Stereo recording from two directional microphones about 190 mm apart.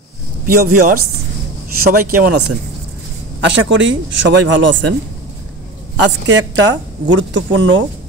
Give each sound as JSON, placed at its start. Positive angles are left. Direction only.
{"t": 0.5, "sound": "speech", "side_deg": -50}
{"t": 3.4, "sound": "speech", "side_deg": -75}
{"t": 5.9, "sound": "speech", "side_deg": -70}